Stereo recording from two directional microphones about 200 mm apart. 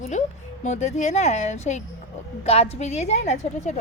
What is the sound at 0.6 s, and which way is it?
Speech, 35° left (ahead or behind).